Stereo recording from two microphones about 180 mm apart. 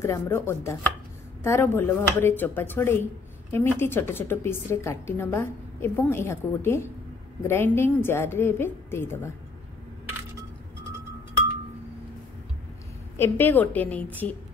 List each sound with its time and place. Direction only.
0.0 s a woman's voice: 15° left (ahead or behind)
13.2 s a woman's voice: 10° left (ahead or behind)